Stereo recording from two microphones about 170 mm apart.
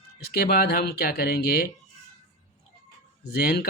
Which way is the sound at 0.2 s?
70° left (ahead or behind).